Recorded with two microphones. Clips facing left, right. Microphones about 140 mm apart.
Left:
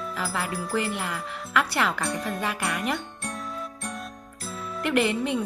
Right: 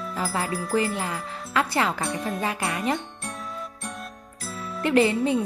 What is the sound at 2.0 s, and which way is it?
Speech, centre (ahead or behind).